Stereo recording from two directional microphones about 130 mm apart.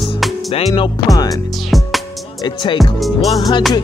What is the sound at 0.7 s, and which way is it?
Music, 35° left (ahead or behind).